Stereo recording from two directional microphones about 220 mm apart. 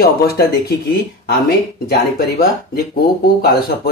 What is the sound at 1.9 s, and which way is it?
Speech, 45° left (ahead or behind).